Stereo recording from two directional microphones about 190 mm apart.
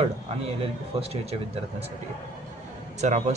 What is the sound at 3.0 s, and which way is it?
Speech, 35° right (ahead or behind).